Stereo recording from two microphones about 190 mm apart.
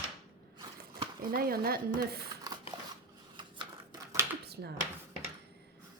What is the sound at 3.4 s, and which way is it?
Typewriter, 25° right (ahead or behind).